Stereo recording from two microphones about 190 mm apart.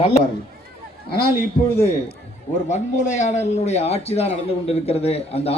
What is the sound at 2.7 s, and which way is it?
A man's voice, 40° left (ahead or behind).